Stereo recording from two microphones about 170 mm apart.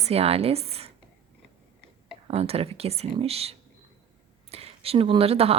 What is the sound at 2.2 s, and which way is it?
Speech, 35° right (ahead or behind).